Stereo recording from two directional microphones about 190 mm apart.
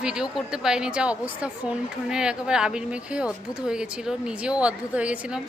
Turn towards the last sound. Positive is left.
turn(degrees=-5)  # may be behind; listen again after turning